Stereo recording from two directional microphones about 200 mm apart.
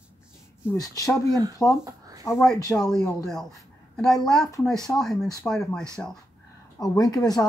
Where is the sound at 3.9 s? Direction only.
5° left (ahead or behind).